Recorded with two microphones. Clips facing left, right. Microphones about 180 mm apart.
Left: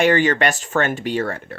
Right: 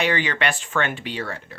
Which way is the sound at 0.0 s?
45° left (ahead or behind).